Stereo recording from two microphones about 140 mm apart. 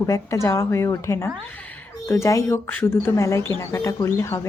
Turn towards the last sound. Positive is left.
turn(degrees=20)  # may be behind; listen again after turning